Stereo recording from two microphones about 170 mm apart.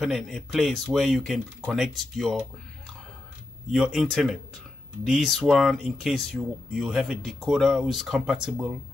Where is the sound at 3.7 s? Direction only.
Centre (ahead or behind).